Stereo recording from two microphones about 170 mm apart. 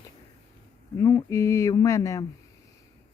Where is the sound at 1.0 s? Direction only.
20° left (ahead or behind).